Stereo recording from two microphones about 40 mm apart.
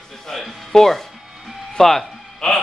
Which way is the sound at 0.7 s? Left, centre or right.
Centre.